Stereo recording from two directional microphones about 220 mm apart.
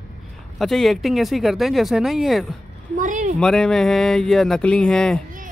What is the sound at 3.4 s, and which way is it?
Speech, 5° left (ahead or behind).